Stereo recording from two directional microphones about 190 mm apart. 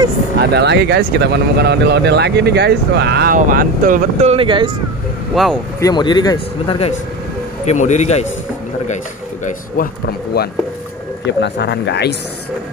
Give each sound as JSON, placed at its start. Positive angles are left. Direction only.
{"t": 0.4, "sound": "speech", "side_deg": -60}
{"t": 3.3, "sound": "speech", "side_deg": -45}
{"t": 5.3, "sound": "speech", "side_deg": 0}
{"t": 5.8, "sound": "speech", "side_deg": 20}
{"t": 7.6, "sound": "speech", "side_deg": 40}
{"t": 11.2, "sound": "speech", "side_deg": 65}